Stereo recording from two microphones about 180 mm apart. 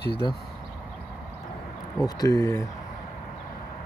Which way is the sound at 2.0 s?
20° left (ahead or behind).